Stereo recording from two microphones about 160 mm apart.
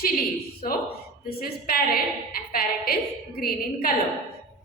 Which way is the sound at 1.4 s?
70° left (ahead or behind).